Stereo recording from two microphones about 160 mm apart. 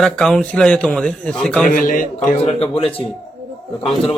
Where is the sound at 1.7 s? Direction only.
55° left (ahead or behind).